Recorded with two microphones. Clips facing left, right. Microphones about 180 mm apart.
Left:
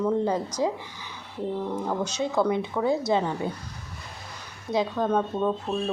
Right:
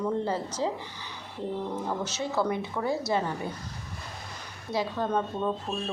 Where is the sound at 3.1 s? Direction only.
20° left (ahead or behind).